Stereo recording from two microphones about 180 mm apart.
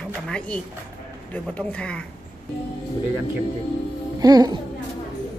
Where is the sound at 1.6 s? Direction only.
5° left (ahead or behind).